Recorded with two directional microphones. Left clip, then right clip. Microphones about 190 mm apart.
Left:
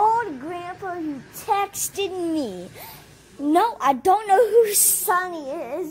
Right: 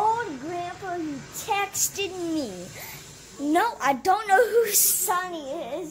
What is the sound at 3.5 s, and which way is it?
A child's voice, 20° left (ahead or behind).